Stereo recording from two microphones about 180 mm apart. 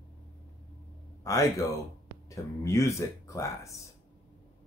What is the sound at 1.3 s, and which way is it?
Speech, 20° left (ahead or behind).